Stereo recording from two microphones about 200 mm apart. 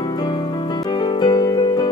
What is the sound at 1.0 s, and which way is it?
Music, 20° left (ahead or behind).